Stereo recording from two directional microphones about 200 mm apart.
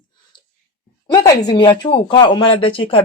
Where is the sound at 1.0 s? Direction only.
20° left (ahead or behind).